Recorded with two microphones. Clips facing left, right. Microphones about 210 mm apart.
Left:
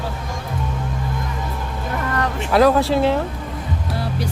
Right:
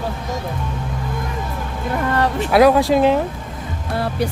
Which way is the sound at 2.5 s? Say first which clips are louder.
Right 2 dB; 10° right (ahead or behind).